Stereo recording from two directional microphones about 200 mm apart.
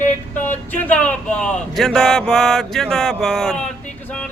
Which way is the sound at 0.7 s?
5° left (ahead or behind).